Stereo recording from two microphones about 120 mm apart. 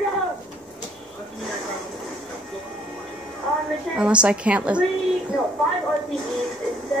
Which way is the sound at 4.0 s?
10° right (ahead or behind).